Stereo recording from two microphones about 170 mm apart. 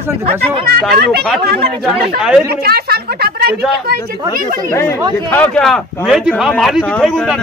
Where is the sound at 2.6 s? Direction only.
65° right (ahead or behind).